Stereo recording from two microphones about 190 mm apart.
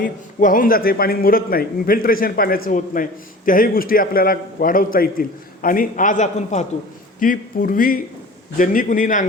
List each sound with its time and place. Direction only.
0.0 s a man's voice: 45° left (ahead or behind)